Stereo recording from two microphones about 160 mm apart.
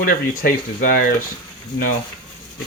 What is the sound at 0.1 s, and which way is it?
Speech, 60° left (ahead or behind).